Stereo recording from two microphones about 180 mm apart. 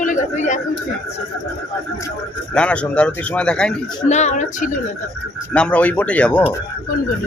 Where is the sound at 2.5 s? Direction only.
5° left (ahead or behind).